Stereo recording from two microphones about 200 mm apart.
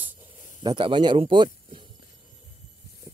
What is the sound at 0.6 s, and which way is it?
Speech, 25° right (ahead or behind).